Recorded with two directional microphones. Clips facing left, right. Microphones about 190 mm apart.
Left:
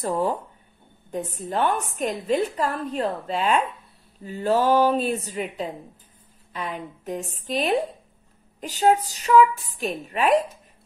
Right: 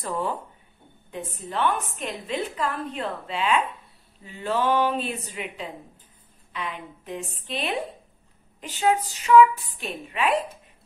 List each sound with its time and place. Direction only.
0.0 s a woman's voice: 40° left (ahead or behind)